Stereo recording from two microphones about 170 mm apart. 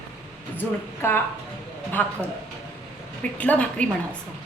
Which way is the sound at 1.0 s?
15° left (ahead or behind).